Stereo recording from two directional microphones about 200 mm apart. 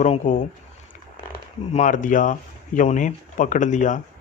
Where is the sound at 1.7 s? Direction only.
40° left (ahead or behind).